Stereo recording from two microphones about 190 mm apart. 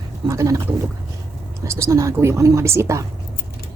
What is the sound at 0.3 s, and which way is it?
Speech, 15° right (ahead or behind).